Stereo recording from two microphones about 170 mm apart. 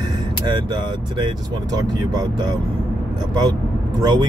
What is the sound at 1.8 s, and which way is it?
Speech, 25° right (ahead or behind).